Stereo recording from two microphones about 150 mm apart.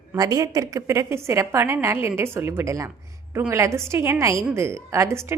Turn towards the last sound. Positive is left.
turn(degrees=-20)  # may be behind; listen again after turning